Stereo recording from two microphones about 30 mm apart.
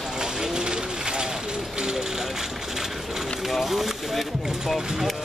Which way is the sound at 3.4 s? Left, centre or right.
Centre.